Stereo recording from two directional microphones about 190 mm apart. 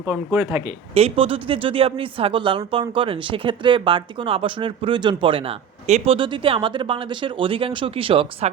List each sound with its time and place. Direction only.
0.1 s speech: 15° right (ahead or behind)
0.9 s speech: 30° right (ahead or behind)